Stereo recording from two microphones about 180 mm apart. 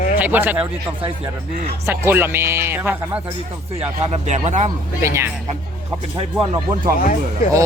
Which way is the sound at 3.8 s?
35° right (ahead or behind).